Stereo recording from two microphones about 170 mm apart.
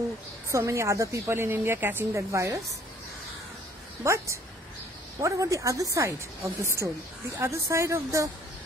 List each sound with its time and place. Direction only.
0.5 s a woman's voice: 15° right (ahead or behind)
4.0 s a woman's voice: 15° right (ahead or behind)